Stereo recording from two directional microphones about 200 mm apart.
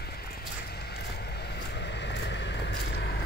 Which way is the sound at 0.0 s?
50° left (ahead or behind).